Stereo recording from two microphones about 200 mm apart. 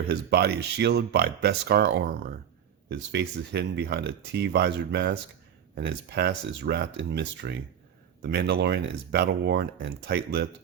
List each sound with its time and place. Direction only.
0.1 s speech: 55° right (ahead or behind)